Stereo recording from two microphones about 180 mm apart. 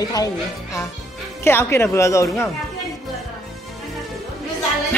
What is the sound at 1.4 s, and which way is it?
Speech, 15° left (ahead or behind).